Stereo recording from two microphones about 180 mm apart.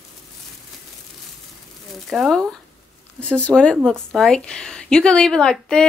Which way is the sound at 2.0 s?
Centre (ahead or behind).